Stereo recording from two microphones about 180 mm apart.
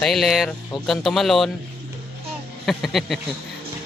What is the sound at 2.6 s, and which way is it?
Speech, centre (ahead or behind).